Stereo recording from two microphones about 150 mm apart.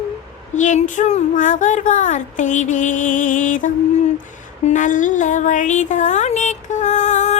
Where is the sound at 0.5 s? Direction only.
55° left (ahead or behind).